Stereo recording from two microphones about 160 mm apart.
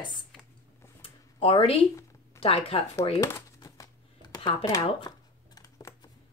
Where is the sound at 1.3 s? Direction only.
35° left (ahead or behind).